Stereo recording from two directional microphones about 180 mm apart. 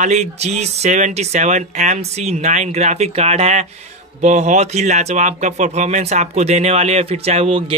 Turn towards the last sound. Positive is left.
turn(degrees=-35)  # may be behind; listen again after turning